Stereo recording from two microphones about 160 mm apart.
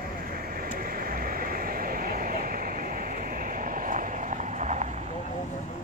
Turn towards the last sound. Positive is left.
turn(degrees=-45)  # may be behind; listen again after turning